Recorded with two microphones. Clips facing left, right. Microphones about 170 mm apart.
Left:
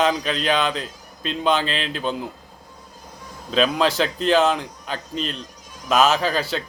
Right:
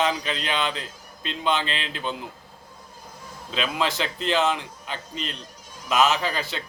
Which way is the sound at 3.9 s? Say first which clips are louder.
Left 6 dB; 20° right (ahead or behind).